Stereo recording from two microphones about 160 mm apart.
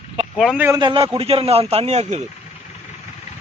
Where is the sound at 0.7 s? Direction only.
25° right (ahead or behind); by 2.2 s 45° right (ahead or behind).